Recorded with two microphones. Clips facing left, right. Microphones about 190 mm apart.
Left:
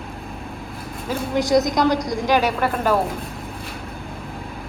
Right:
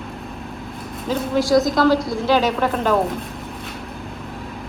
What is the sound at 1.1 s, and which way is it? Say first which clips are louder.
A woman's voice: right 2 dB; 20° left (ahead or behind).